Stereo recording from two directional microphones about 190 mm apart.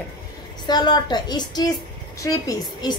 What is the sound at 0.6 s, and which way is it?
A woman's voice, 25° left (ahead or behind).